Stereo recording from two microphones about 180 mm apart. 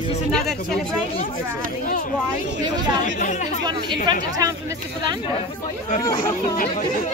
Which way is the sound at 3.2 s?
45° left (ahead or behind).